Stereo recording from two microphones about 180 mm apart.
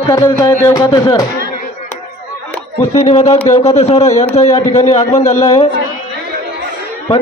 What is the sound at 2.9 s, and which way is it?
A man's voice, 35° left (ahead or behind).